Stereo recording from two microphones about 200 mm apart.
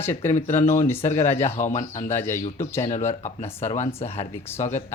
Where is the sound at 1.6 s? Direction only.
35° left (ahead or behind).